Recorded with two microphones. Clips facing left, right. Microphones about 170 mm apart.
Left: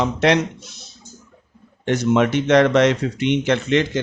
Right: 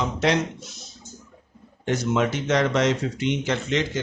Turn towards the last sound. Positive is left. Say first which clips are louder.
# left 6 dB
turn(degrees=65)  # may be behind; listen again after turning